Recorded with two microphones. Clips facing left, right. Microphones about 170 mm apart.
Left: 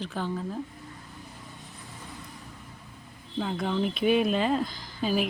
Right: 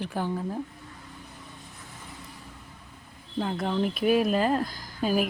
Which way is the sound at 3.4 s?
Centre (ahead or behind).